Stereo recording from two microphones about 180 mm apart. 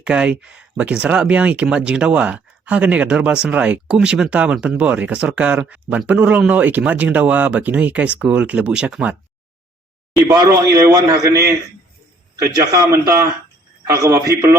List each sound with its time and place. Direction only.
0.0 s speech: 5° right (ahead or behind)
10.2 s a man's voice: 20° right (ahead or behind)
12.4 s speech: 15° right (ahead or behind)